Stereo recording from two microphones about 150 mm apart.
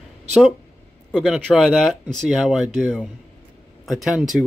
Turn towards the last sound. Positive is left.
turn(degrees=-5)  # may be behind; listen again after turning